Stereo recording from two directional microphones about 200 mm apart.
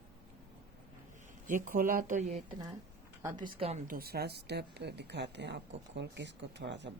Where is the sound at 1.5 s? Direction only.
40° right (ahead or behind).